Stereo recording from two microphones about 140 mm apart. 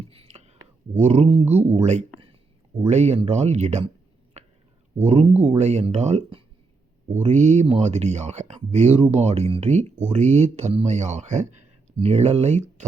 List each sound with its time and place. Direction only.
0.1 s whispering: 45° right (ahead or behind)
0.9 s speech: 50° right (ahead or behind)
1.8 s speech: 55° right (ahead or behind)
4.4 s whispering: 50° right (ahead or behind)
5.0 s speech: 50° right (ahead or behind)